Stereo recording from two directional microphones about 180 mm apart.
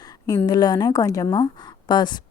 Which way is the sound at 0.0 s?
20° left (ahead or behind).